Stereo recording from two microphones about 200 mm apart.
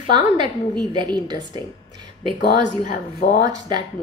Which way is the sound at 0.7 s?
20° right (ahead or behind).